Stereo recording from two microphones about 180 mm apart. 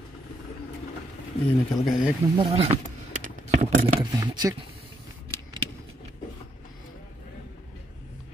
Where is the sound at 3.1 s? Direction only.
45° right (ahead or behind).